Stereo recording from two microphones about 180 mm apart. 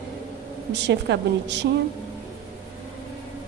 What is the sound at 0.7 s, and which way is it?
Speech, 75° right (ahead or behind).